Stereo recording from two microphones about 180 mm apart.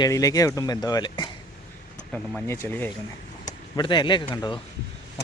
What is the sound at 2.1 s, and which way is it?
Speech, 10° left (ahead or behind).